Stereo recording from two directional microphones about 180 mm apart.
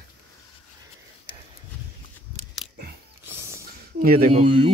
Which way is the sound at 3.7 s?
55° right (ahead or behind).